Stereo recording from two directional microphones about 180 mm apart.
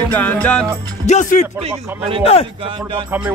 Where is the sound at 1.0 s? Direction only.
40° left (ahead or behind).